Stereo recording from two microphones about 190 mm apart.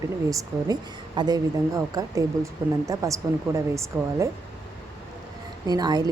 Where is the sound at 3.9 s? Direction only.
Centre (ahead or behind).